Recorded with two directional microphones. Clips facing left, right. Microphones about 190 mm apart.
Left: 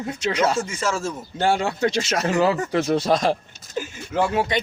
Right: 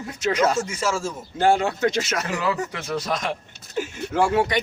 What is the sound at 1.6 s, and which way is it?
Speech, 30° left (ahead or behind).